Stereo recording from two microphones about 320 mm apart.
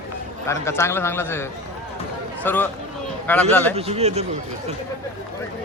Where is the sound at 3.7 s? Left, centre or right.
Centre.